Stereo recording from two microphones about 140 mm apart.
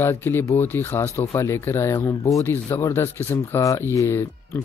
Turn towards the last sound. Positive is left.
turn(degrees=15)  # may be behind; listen again after turning